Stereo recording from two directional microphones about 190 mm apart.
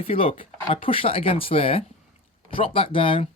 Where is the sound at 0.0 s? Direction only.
30° left (ahead or behind).